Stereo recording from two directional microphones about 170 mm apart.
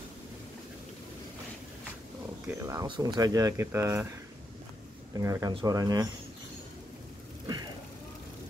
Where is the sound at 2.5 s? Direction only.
20° right (ahead or behind).